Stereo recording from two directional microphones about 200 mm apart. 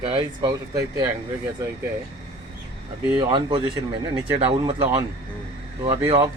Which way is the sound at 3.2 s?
25° right (ahead or behind).